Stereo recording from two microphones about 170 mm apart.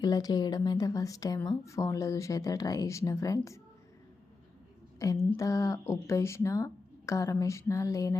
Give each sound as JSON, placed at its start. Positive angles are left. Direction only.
{"t": 0.0, "sound": "speech", "side_deg": 20}
{"t": 5.0, "sound": "speech", "side_deg": 20}